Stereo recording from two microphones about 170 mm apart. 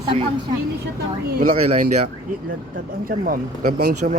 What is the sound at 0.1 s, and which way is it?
Speech, 35° right (ahead or behind).